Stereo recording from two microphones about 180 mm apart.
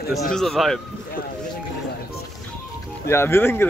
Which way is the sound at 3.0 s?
15° left (ahead or behind).